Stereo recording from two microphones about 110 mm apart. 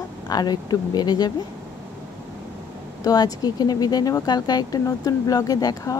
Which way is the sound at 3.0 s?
35° left (ahead or behind).